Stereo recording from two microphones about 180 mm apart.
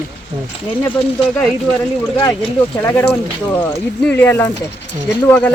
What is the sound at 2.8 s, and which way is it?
Speech, 10° left (ahead or behind).